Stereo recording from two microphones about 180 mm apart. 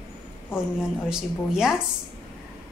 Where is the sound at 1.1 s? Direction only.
5° right (ahead or behind).